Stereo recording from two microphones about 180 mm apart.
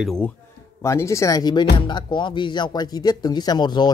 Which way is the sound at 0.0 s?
5° left (ahead or behind).